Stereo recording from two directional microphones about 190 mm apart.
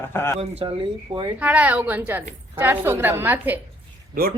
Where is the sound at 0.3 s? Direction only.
30° right (ahead or behind).